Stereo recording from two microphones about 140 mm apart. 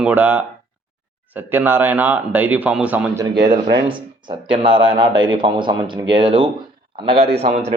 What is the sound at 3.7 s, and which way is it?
A man's voice, 35° right (ahead or behind).